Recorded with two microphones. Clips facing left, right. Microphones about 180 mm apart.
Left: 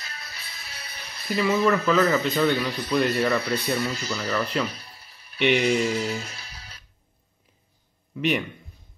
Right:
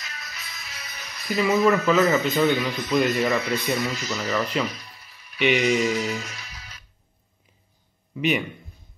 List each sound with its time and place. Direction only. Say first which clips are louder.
0.0 s music: right 1 dB; 30° left (ahead or behind)
2.4 s speech: right 1 dB; 35° left (ahead or behind)
4.6 s music: right 2 dB; 30° left (ahead or behind)
8.2 s speech: right 1 dB; 5° right (ahead or behind)